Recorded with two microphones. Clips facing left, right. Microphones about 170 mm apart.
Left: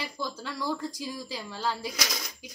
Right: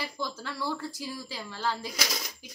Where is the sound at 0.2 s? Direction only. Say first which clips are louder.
Left 1 dB; 15° left (ahead or behind).